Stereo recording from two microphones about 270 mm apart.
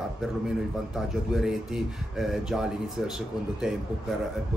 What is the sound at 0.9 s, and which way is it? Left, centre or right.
Speech, centre.